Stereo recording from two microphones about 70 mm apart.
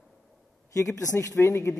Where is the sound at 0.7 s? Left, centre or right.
Left.